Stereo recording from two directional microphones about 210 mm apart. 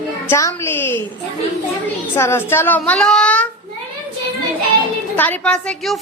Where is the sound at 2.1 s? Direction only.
10° left (ahead or behind).